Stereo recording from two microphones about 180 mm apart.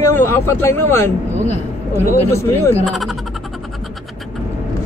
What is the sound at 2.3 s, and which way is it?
Speech, 15° left (ahead or behind).